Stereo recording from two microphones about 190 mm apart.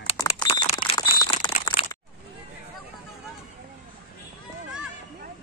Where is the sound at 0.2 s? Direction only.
20° left (ahead or behind).